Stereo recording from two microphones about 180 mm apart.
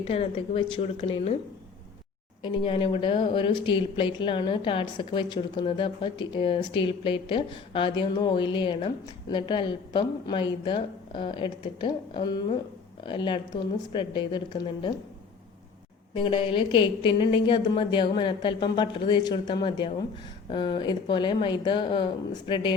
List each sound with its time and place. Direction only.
0.0 s a woman's voice: 30° left (ahead or behind)
2.4 s speech: 25° left (ahead or behind)
16.1 s speech: 25° left (ahead or behind)